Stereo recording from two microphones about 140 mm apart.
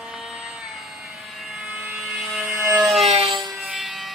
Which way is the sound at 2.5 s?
15° right (ahead or behind).